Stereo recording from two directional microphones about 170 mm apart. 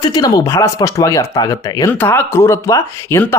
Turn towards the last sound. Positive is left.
turn(degrees=15)  # may be behind; listen again after turning